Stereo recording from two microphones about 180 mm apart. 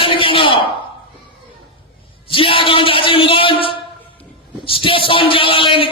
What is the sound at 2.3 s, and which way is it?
Speech, 30° left (ahead or behind).